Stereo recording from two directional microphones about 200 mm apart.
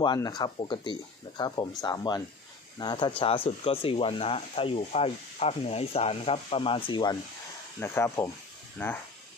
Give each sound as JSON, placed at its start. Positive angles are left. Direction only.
{"t": 0.0, "sound": "speech", "side_deg": 20}